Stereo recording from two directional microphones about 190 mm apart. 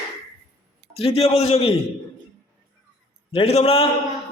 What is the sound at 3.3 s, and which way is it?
Speech, 30° left (ahead or behind).